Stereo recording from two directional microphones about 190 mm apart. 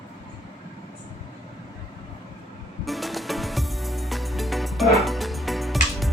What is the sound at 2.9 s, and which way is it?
Music, centre (ahead or behind).